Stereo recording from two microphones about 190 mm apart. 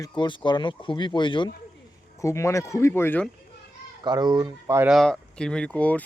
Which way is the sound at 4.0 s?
20° right (ahead or behind).